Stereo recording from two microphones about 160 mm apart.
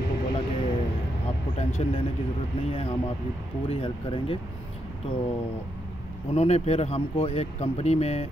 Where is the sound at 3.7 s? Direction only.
35° left (ahead or behind).